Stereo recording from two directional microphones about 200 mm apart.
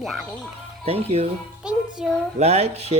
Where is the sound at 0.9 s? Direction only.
30° right (ahead or behind).